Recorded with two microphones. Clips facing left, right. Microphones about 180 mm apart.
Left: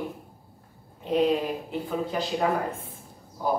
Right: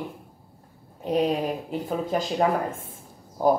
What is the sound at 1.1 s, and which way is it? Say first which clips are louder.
A woman's voice: even; 40° right (ahead or behind).